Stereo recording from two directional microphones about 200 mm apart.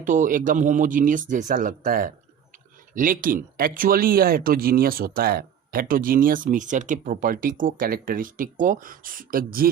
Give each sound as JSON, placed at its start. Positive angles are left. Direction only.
{"t": 0.0, "sound": "speech", "side_deg": -40}